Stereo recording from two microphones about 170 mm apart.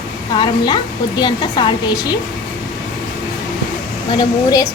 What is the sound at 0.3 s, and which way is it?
A woman's voice, 25° left (ahead or behind).